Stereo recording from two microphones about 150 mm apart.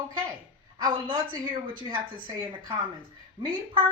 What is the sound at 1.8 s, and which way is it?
A woman's voice, 30° right (ahead or behind).